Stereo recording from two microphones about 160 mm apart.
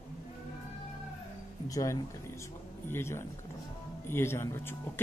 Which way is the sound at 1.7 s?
20° left (ahead or behind).